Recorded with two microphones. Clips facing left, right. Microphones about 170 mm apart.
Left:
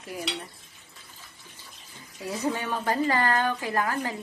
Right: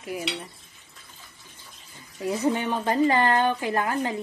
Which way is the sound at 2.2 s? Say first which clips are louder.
Right 5 dB; 20° right (ahead or behind).